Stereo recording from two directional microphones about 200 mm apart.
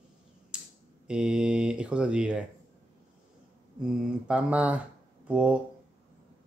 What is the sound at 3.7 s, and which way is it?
Speech, 5° right (ahead or behind).